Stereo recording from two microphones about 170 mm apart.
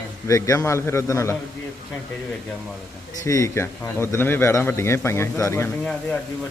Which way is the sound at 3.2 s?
20° left (ahead or behind).